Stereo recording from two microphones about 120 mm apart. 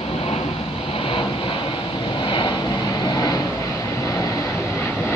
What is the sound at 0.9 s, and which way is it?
Vehicle, 50° left (ahead or behind).